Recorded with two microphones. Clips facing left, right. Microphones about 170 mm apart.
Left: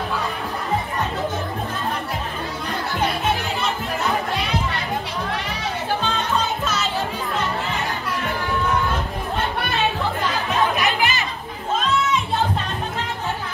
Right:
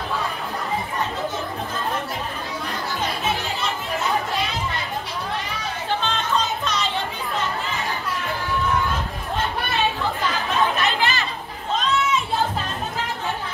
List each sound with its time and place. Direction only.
6.0 s music: 5° left (ahead or behind)
10.8 s music: 15° left (ahead or behind)